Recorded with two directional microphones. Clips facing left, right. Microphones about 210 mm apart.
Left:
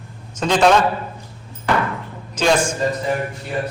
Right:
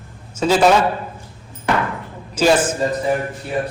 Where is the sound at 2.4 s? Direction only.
5° right (ahead or behind).